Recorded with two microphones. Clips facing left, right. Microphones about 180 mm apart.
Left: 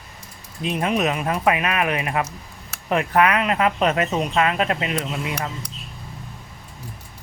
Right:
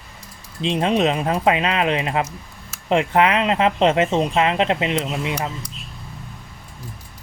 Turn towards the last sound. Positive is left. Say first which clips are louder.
# right 3 dB
turn(degrees=-25)  # may be behind; listen again after turning